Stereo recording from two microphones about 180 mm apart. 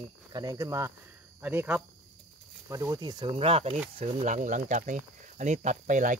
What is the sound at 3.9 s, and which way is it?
Speech, 40° right (ahead or behind).